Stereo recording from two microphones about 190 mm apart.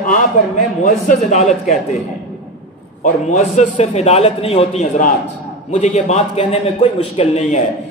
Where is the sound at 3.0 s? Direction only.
45° left (ahead or behind).